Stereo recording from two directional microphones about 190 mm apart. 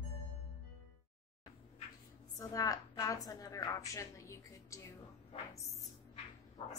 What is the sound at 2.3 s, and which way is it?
A woman's voice, 20° left (ahead or behind).